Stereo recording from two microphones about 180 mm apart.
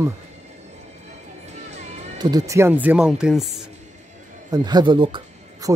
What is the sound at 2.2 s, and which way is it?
Speech, 20° right (ahead or behind).